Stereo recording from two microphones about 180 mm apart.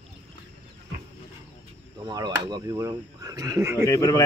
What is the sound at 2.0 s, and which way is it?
Speech, 20° right (ahead or behind).